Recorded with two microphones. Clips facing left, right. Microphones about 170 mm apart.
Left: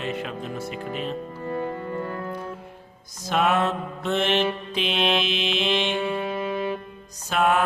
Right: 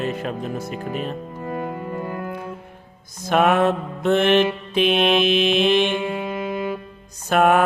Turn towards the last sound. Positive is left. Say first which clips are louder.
# right 5 dB
turn(degrees=-55)  # may be behind; listen again after turning